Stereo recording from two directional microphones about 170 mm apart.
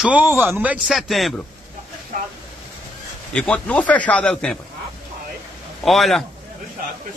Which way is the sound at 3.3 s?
5° left (ahead or behind).